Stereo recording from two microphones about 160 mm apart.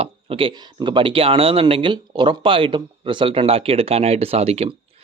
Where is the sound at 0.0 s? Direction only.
35° right (ahead or behind).